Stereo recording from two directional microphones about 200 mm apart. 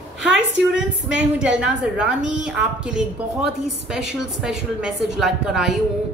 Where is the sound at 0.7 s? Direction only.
5° right (ahead or behind).